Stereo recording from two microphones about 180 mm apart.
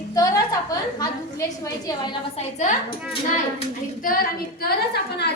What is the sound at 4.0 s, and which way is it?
Child singing, 50° left (ahead or behind).